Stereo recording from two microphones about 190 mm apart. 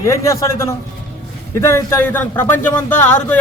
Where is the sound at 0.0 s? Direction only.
15° left (ahead or behind).